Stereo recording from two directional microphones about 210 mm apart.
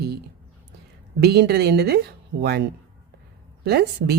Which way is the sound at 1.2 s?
50° right (ahead or behind).